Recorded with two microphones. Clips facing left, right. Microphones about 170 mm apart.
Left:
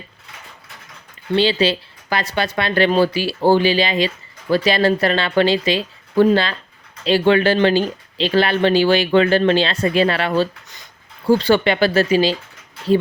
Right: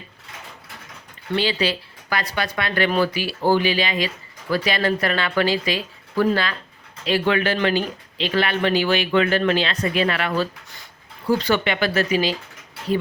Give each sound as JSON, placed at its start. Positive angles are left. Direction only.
{"t": 1.4, "sound": "speech", "side_deg": 25}